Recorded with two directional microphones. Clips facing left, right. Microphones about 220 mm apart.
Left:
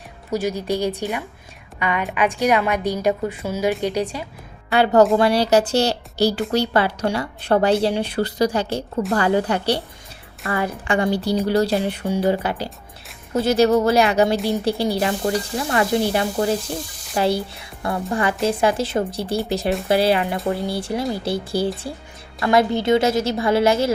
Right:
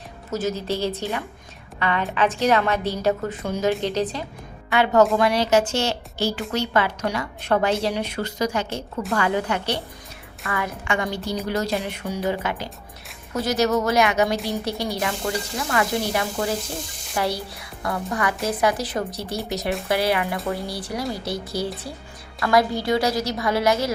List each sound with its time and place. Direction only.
0.3 s a woman's voice: 15° left (ahead or behind)
4.7 s a woman's voice: 35° left (ahead or behind)